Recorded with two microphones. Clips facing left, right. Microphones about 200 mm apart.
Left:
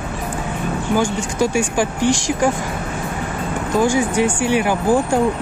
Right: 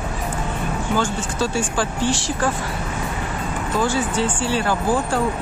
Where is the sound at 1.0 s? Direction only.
15° left (ahead or behind).